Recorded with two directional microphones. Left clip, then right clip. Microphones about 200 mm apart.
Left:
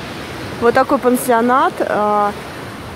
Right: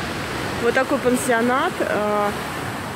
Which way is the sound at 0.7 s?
20° left (ahead or behind).